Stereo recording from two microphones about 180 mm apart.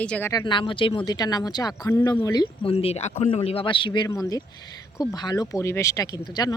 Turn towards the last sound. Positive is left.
turn(degrees=25)  # may be behind; listen again after turning